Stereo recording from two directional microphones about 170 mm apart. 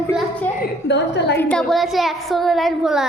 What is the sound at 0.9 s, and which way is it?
Speech, 90° left.